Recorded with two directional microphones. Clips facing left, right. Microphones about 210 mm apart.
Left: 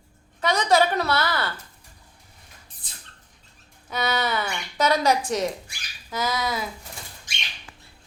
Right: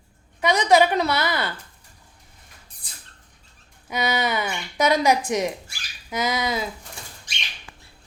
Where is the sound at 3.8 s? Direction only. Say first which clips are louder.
Right 2 dB; 15° right (ahead or behind).